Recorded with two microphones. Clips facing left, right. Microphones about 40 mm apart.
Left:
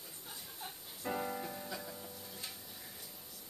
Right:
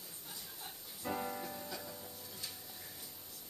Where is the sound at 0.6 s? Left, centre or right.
Centre.